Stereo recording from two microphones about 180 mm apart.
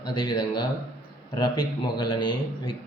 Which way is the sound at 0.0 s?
25° left (ahead or behind).